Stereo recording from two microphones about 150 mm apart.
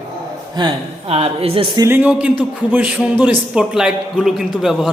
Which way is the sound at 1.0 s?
40° right (ahead or behind).